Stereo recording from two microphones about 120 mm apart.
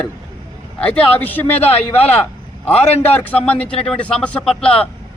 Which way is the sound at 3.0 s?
15° left (ahead or behind).